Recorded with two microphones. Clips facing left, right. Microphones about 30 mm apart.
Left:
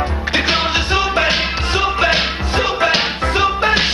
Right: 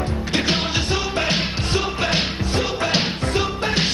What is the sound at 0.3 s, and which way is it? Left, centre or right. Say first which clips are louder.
Music: left 5 dB; left.